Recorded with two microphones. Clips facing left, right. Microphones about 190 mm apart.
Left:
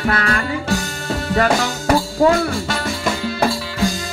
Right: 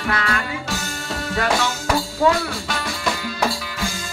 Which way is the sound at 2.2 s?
35° left (ahead or behind).